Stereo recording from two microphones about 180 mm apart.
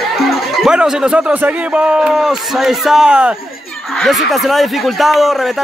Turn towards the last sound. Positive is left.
turn(degrees=0)  # may be behind; listen again after turning